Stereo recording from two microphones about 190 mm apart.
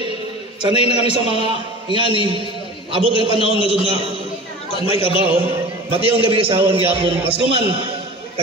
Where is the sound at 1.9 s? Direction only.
25° right (ahead or behind).